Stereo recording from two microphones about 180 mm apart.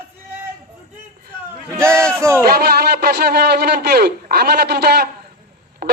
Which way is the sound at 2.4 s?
60° right (ahead or behind).